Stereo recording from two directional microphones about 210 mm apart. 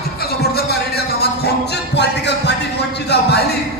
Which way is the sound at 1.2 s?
50° left (ahead or behind).